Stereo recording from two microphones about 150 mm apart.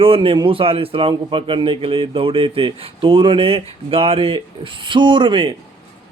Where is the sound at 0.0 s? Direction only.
35° right (ahead or behind).